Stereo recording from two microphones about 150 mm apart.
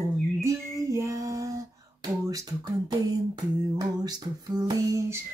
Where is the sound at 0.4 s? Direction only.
20° right (ahead or behind).